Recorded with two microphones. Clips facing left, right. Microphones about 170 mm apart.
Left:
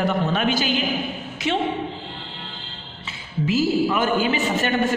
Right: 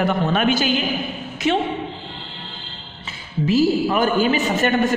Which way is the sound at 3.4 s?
40° right (ahead or behind).